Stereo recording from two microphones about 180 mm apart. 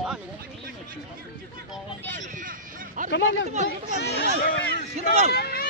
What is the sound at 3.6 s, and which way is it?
A child's voice, 65° left (ahead or behind).